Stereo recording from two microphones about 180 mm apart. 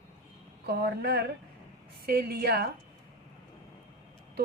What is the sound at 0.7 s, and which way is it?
A woman's voice, 65° right (ahead or behind).